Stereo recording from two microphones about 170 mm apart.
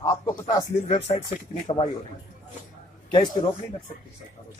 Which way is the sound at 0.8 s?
40° left (ahead or behind).